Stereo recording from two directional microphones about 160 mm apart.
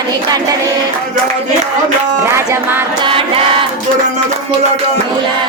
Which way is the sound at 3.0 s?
35° right (ahead or behind).